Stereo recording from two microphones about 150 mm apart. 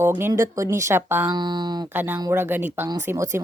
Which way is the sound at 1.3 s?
30° right (ahead or behind).